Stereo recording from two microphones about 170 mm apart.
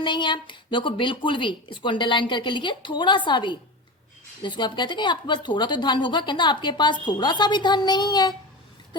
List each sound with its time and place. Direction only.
0.0 s a woman's voice: 30° left (ahead or behind)